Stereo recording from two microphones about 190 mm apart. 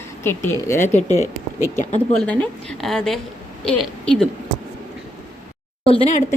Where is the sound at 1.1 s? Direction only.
15° right (ahead or behind).